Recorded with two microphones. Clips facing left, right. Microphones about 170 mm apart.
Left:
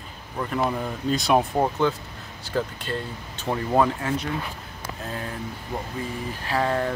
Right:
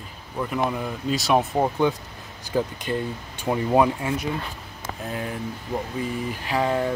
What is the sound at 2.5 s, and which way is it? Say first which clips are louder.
Speech: right 3 dB; 15° right (ahead or behind).